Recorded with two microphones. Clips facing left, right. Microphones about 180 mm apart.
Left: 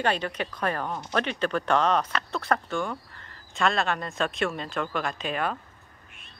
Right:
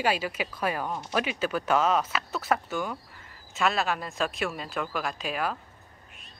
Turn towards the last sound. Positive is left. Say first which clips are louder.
# left 1 dB
turn(degrees=-5)  # may be behind; listen again after turning